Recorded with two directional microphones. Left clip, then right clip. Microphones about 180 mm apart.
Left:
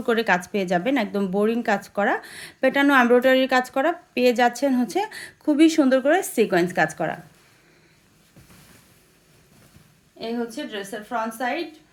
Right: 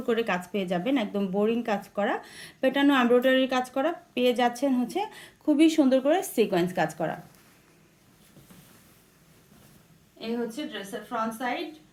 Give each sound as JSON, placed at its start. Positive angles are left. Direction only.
{"t": 0.0, "sound": "speech", "side_deg": 40}
{"t": 10.2, "sound": "a woman's voice", "side_deg": 55}